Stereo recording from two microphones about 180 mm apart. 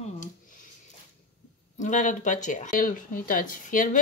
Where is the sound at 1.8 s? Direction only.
45° left (ahead or behind).